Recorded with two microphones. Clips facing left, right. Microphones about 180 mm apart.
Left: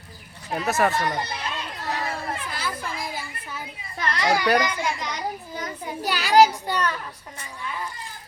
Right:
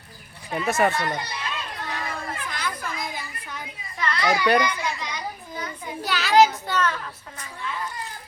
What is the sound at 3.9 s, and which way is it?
A child's voice, 40° left (ahead or behind).